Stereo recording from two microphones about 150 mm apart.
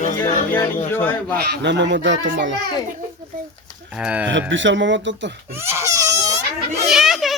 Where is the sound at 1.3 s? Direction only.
90° right.